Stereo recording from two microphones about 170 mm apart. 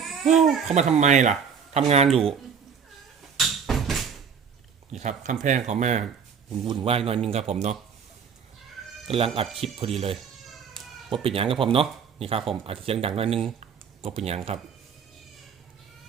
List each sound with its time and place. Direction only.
0.0 s babbling: centre (ahead or behind)
0.7 s speech: 40° right (ahead or behind)
3.3 s a sound: centre (ahead or behind)
4.9 s speech: 45° right (ahead or behind)
9.0 s speech: 35° right (ahead or behind)
10.2 s cat: centre (ahead or behind)
11.1 s speech: 35° right (ahead or behind)